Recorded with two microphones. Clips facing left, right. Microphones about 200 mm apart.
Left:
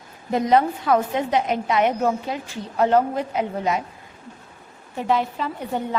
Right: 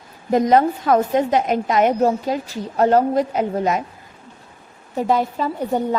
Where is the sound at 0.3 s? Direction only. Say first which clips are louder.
Right 3 dB; 45° right (ahead or behind).